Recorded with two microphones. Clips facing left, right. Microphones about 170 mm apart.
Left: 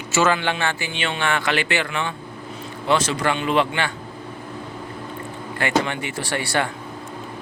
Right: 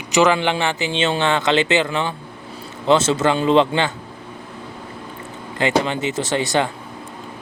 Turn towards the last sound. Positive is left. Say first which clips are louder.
# right 4 dB
turn(degrees=-20)  # may be behind; listen again after turning